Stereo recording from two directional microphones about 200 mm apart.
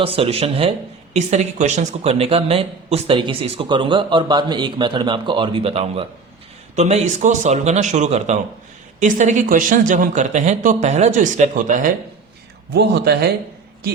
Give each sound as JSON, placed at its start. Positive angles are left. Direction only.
{"t": 0.0, "sound": "speech", "side_deg": -30}
{"t": 12.7, "sound": "speech", "side_deg": -55}